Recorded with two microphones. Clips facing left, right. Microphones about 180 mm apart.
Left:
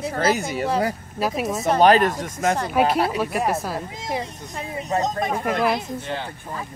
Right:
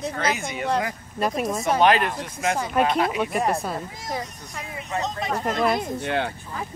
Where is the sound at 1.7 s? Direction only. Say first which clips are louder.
Left 5 dB; 35° left (ahead or behind).